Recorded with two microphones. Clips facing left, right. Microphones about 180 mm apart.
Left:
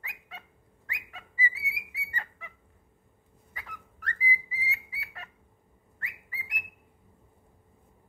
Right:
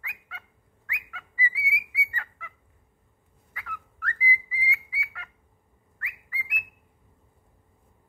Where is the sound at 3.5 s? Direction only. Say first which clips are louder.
Right 5 dB; 20° left (ahead or behind).